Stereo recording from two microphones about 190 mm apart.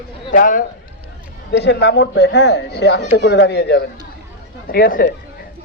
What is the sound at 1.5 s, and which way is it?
Speech, 65° left (ahead or behind).